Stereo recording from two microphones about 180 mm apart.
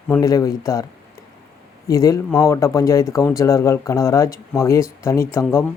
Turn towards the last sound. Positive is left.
turn(degrees=15)  # may be behind; listen again after turning